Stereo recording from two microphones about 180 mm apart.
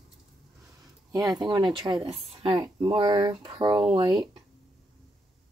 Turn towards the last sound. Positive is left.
turn(degrees=-30)  # may be behind; listen again after turning